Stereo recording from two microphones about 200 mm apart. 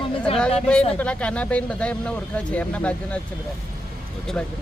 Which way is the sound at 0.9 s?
5° left (ahead or behind).